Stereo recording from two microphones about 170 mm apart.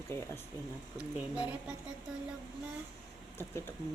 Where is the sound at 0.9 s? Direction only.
5° right (ahead or behind).